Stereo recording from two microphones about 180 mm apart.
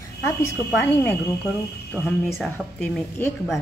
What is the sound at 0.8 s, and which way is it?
Speech, 10° left (ahead or behind).